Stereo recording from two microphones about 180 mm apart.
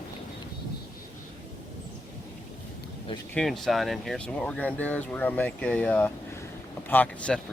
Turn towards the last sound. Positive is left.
turn(degrees=10)  # may be behind; listen again after turning